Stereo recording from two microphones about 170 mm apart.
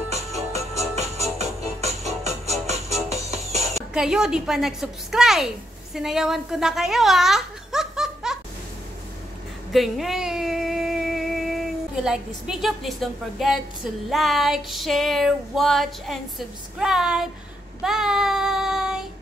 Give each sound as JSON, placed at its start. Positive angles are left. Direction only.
{"t": 0.7, "sound": "music", "side_deg": -40}
{"t": 3.9, "sound": "music", "side_deg": -5}
{"t": 5.9, "sound": "speech", "side_deg": -5}
{"t": 9.7, "sound": "a sound", "side_deg": 0}
{"t": 12.4, "sound": "music", "side_deg": 0}
{"t": 17.8, "sound": "child singing", "side_deg": -5}